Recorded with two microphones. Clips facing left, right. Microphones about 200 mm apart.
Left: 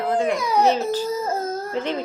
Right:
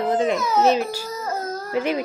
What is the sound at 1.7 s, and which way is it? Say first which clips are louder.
Speech: right 5 dB; 10° right (ahead or behind).